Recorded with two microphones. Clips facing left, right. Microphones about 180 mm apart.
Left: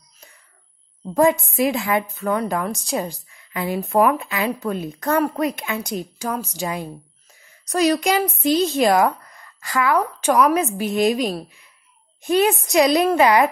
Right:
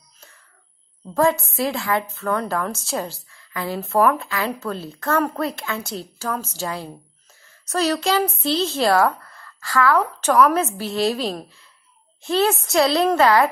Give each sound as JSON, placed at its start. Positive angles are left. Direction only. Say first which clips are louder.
{"t": 1.1, "sound": "a woman's voice", "louder": "left 2 dB", "side_deg": 15}